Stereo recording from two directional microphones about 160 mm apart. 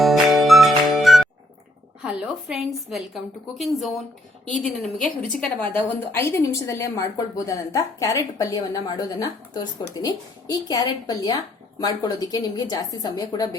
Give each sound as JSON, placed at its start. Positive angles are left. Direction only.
{"t": 0.0, "sound": "music", "side_deg": 0}
{"t": 2.0, "sound": "a woman's voice", "side_deg": -10}